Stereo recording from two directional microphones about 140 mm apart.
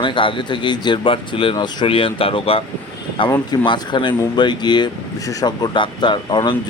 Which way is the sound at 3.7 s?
35° left (ahead or behind).